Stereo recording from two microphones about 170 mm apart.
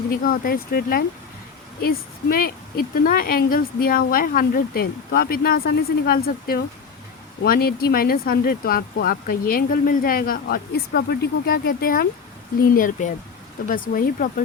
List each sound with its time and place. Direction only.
0.1 s speech: 60° left (ahead or behind)
2.3 s speech: 60° left (ahead or behind)
12.7 s speech: 50° left (ahead or behind)